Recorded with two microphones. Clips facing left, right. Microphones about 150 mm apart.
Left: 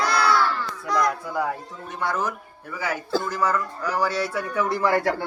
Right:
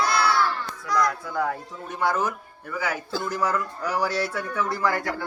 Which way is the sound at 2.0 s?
5° right (ahead or behind).